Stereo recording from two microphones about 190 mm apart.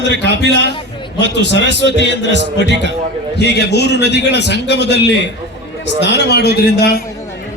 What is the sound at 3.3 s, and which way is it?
A man's voice, 60° left (ahead or behind).